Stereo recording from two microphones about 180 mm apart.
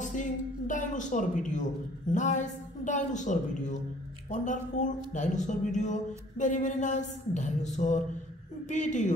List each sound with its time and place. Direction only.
0.0 s a woman's voice: 45° left (ahead or behind)